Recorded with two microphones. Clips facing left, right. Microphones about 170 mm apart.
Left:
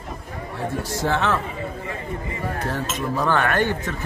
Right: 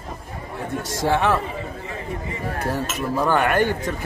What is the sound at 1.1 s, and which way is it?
Speech, 10° right (ahead or behind).